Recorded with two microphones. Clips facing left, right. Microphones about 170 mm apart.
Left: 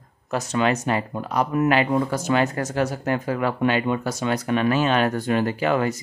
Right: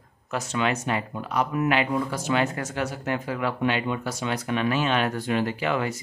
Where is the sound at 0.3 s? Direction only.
40° left (ahead or behind).